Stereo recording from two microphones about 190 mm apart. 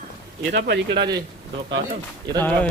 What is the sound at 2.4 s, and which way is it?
Speech, 10° left (ahead or behind).